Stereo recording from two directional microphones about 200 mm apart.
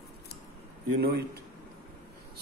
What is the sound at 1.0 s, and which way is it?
Speech, 55° right (ahead or behind).